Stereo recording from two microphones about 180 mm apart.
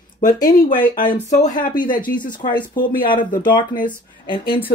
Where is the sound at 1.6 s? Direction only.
25° left (ahead or behind).